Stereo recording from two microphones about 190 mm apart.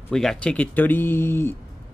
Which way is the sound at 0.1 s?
5° left (ahead or behind).